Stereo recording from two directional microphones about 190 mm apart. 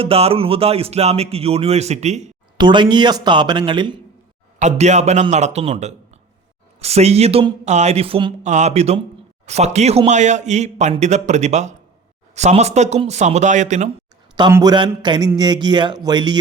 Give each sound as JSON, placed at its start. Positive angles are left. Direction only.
{"t": 0.0, "sound": "speech", "side_deg": -30}
{"t": 2.6, "sound": "speech", "side_deg": -25}
{"t": 4.6, "sound": "speech", "side_deg": -35}
{"t": 14.5, "sound": "speech", "side_deg": -20}